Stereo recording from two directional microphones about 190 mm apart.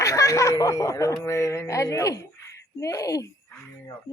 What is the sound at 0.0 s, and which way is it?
Speech, 15° left (ahead or behind).